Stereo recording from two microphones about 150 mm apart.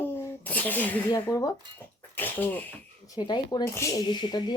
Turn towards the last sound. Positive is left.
turn(degrees=30)  # may be behind; listen again after turning